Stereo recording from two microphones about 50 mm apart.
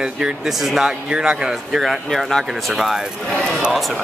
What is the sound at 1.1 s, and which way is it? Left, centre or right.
Speech, centre.